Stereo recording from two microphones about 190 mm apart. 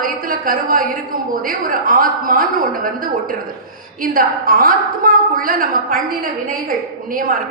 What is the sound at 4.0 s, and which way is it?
A woman's voice, 50° right (ahead or behind).